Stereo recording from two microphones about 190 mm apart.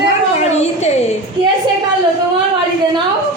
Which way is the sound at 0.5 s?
35° left (ahead or behind).